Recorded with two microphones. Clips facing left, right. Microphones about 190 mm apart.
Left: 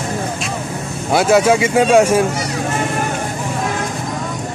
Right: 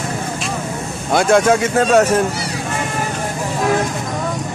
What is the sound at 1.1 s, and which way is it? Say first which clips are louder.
Speech: left 1 dB; 5° left (ahead or behind).